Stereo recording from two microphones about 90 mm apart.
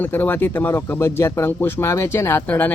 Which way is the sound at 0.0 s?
20° left (ahead or behind).